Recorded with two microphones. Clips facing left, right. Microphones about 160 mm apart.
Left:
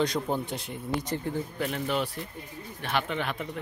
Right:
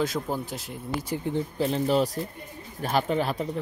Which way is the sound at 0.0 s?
5° right (ahead or behind).